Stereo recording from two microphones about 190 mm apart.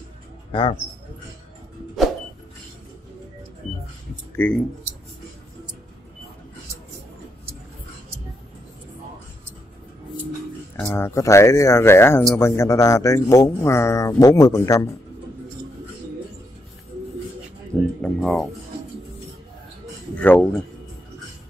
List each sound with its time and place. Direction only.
0.5 s speech: 30° left (ahead or behind)
4.4 s speech: 5° left (ahead or behind)
10.8 s speech: 10° left (ahead or behind)
18.0 s speech: 5° left (ahead or behind)
20.2 s speech: 10° left (ahead or behind)